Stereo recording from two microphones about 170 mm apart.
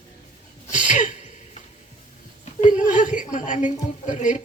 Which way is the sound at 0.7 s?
50° left (ahead or behind).